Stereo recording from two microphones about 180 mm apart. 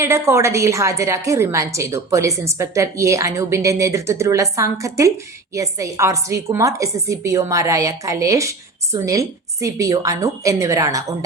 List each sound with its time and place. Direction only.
0.0 s a woman's voice: 15° right (ahead or behind)